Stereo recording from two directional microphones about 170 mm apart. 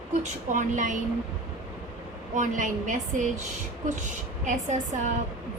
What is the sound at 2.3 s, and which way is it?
Speech, 45° right (ahead or behind).